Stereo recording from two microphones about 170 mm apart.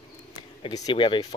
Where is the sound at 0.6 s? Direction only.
30° left (ahead or behind).